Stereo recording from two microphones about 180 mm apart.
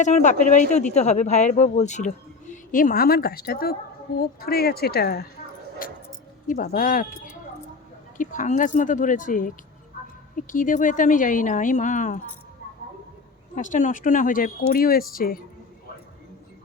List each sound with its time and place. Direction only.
0.0 s speech: 40° left (ahead or behind); by 5.2 s 60° left (ahead or behind)
5.8 s a sound: 50° left (ahead or behind)
6.5 s speech: 50° left (ahead or behind)
10.5 s speech: 45° left (ahead or behind)
13.6 s speech: 45° left (ahead or behind)